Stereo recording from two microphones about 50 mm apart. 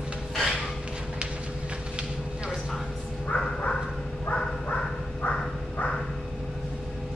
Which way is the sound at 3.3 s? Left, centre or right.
Left.